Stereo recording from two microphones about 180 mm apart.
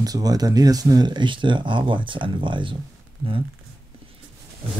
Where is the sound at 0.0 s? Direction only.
20° right (ahead or behind).